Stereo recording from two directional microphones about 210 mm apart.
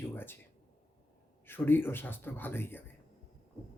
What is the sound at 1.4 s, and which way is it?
Speech, 10° left (ahead or behind).